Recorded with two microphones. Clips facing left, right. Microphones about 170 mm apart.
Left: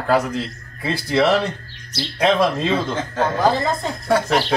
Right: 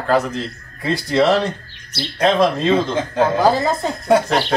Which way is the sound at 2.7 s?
15° right (ahead or behind).